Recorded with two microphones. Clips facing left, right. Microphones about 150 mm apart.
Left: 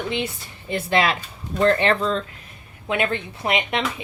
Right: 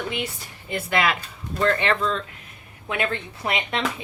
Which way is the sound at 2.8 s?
20° left (ahead or behind).